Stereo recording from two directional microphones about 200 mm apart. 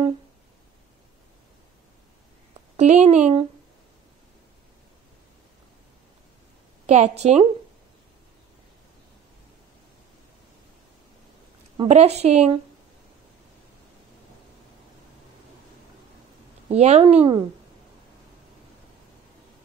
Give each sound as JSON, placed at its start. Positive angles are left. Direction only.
{"t": 2.8, "sound": "a woman's voice", "side_deg": -35}
{"t": 6.9, "sound": "a woman's voice", "side_deg": -35}
{"t": 11.8, "sound": "a woman's voice", "side_deg": -30}
{"t": 16.6, "sound": "a woman's voice", "side_deg": -35}